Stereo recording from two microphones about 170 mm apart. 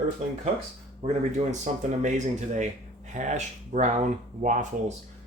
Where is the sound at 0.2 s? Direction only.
40° right (ahead or behind).